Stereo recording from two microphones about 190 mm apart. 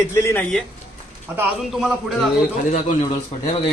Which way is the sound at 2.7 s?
40° left (ahead or behind).